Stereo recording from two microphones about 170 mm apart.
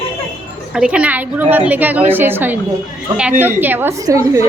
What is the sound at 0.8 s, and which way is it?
A woman's voice, 5° right (ahead or behind).